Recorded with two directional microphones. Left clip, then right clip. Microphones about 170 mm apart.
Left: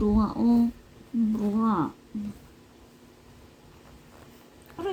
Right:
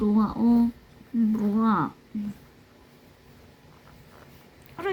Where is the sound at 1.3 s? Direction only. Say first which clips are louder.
Right 2 dB; 15° right (ahead or behind).